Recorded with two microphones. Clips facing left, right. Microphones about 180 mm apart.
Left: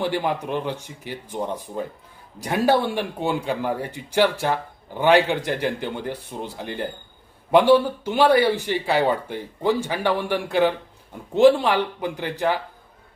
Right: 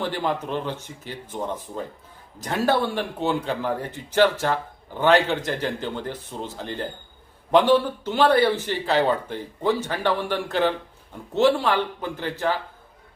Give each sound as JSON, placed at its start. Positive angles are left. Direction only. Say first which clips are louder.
{"t": 0.0, "sound": "speech", "louder": "left 2 dB", "side_deg": 15}